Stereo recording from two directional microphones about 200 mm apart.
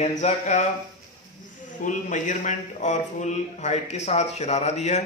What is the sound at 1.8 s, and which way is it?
A man's voice, 40° left (ahead or behind).